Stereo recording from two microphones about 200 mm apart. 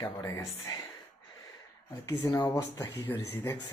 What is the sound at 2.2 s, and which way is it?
Speech, 15° left (ahead or behind).